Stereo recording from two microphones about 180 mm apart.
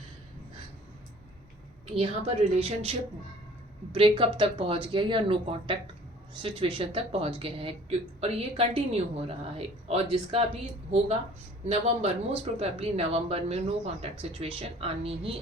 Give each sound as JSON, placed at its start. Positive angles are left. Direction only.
{"t": 1.9, "sound": "speech", "side_deg": -35}
{"t": 3.9, "sound": "speech", "side_deg": -30}
{"t": 11.6, "sound": "speech", "side_deg": -35}